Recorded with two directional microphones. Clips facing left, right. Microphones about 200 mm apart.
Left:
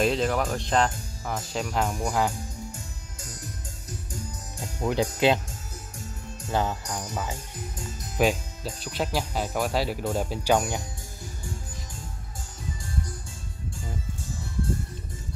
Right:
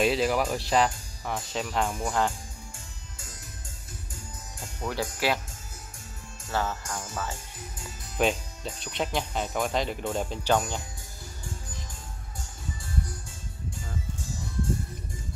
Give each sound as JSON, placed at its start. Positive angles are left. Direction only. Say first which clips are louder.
{"t": 0.0, "sound": "speech", "louder": "even", "side_deg": -5}
{"t": 4.7, "sound": "speech", "louder": "left 6 dB", "side_deg": 20}
{"t": 6.5, "sound": "speech", "louder": "left 3 dB", "side_deg": 15}
{"t": 8.2, "sound": "speech", "louder": "left 2 dB", "side_deg": 5}